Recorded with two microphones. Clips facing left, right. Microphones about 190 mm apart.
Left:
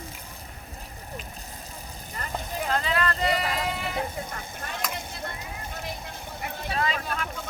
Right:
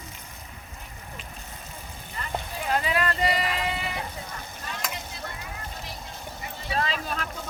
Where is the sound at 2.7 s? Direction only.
10° right (ahead or behind).